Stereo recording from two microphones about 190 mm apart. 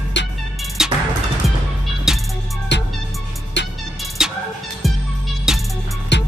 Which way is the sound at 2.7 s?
70° left (ahead or behind).